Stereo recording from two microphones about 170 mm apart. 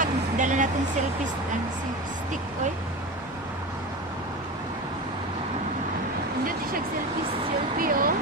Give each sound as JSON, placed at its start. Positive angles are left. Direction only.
{"t": 0.0, "sound": "vehicle", "side_deg": -45}
{"t": 7.8, "sound": "speech", "side_deg": -55}